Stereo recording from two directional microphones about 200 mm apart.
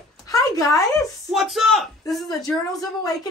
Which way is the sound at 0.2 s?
15° left (ahead or behind).